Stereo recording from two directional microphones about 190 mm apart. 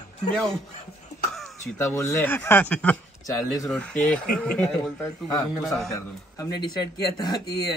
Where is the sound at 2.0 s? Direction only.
15° left (ahead or behind).